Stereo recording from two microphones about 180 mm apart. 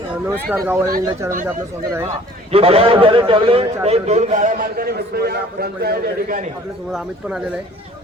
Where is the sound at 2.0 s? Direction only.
30° right (ahead or behind); by 6.5 s 50° right (ahead or behind).